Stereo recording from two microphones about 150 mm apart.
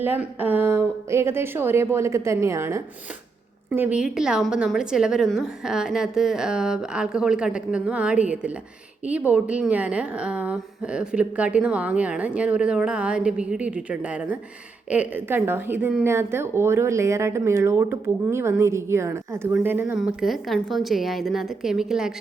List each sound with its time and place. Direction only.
0.0 s a woman's voice: 15° right (ahead or behind)
20.0 s a woman's voice: centre (ahead or behind)